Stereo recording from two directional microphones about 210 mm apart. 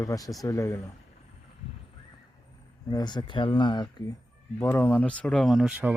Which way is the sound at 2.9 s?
20° left (ahead or behind).